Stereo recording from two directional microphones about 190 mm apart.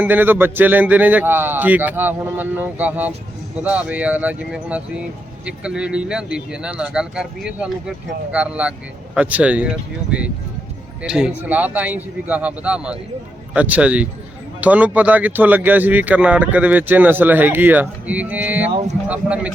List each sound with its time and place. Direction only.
0.0 s speech: 10° right (ahead or behind)